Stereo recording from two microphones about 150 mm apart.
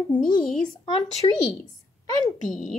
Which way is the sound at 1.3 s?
30° left (ahead or behind).